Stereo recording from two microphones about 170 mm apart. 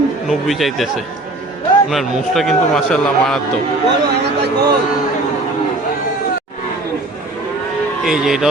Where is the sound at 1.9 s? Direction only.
Centre (ahead or behind).